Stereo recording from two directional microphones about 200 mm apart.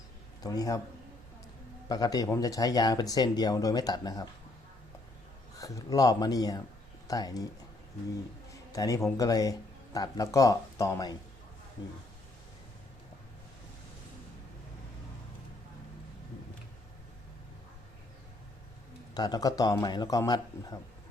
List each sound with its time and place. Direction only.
0.4 s speech: 20° left (ahead or behind)
1.9 s speech: 20° left (ahead or behind)
5.5 s speech: 15° left (ahead or behind)
8.7 s speech: 15° left (ahead or behind)
19.1 s speech: 20° left (ahead or behind)